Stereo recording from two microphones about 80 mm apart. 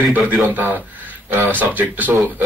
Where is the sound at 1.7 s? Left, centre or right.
Right.